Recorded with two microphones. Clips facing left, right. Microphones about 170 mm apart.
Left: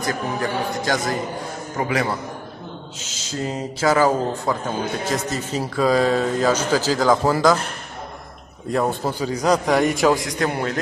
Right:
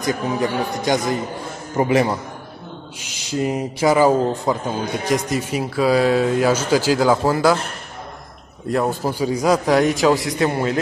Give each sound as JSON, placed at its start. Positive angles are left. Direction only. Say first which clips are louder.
{"t": 0.0, "sound": "a man's voice", "louder": "right 3 dB", "side_deg": -20}
{"t": 3.0, "sound": "speech", "louder": "right 6 dB", "side_deg": -15}
{"t": 8.7, "sound": "a man's voice", "louder": "right 1 dB", "side_deg": 0}